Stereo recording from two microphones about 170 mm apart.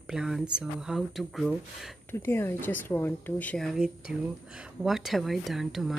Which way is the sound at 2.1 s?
15° left (ahead or behind).